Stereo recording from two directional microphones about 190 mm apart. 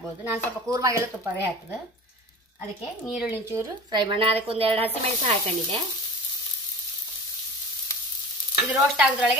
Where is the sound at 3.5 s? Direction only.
20° right (ahead or behind).